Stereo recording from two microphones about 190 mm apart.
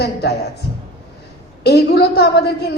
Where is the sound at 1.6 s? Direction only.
60° left (ahead or behind).